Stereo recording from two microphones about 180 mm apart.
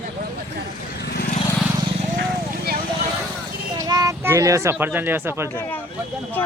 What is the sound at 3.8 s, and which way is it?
Speech, 20° right (ahead or behind).